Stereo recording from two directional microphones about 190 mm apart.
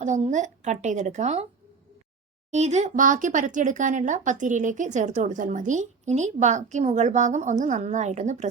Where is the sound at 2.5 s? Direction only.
35° right (ahead or behind).